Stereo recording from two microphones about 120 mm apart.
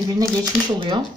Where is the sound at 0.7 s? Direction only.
45° right (ahead or behind).